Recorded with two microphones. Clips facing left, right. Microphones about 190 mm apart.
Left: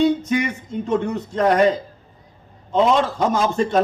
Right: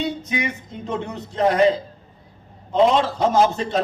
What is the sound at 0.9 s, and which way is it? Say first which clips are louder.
Speech: left 6 dB; 45° left (ahead or behind).